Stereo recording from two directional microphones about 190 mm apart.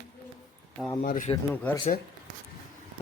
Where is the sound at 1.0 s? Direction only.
40° left (ahead or behind).